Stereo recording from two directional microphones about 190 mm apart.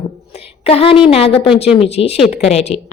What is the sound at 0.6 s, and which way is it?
A woman's voice, 30° left (ahead or behind).